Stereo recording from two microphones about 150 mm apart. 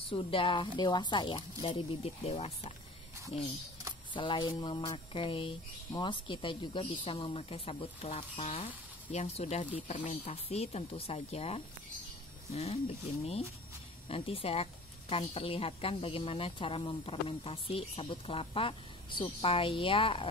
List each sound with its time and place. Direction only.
0.1 s speech: 35° left (ahead or behind)
4.1 s speech: 35° left (ahead or behind)